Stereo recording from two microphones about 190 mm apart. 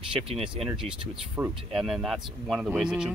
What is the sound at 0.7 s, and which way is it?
Speech, 25° right (ahead or behind).